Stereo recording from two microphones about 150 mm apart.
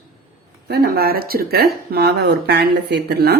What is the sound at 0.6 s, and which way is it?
Speech, 90° right.